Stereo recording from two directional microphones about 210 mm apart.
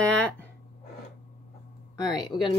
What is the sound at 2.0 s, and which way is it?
Speech, 20° left (ahead or behind).